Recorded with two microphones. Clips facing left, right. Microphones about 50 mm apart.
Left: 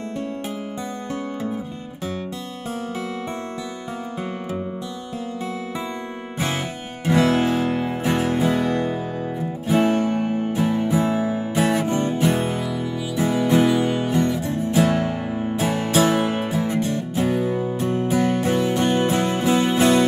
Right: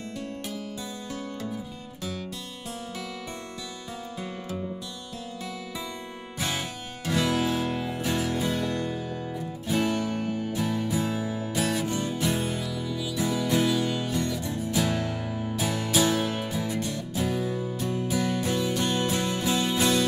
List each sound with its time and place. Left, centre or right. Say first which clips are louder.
7.1 s music: left 7 dB; left